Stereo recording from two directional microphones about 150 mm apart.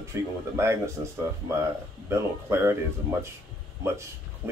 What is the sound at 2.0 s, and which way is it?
Speech, 15° right (ahead or behind).